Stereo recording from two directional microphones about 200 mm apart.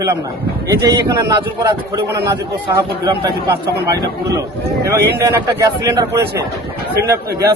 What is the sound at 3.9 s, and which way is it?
Speech, 15° right (ahead or behind).